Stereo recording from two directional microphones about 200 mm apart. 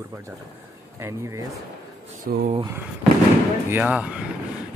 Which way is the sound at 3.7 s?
5° right (ahead or behind).